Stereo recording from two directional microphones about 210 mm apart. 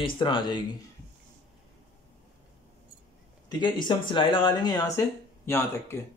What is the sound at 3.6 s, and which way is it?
Speech, 20° left (ahead or behind).